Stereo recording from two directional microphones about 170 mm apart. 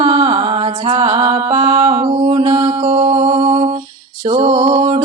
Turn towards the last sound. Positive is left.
turn(degrees=-40)  # may be behind; listen again after turning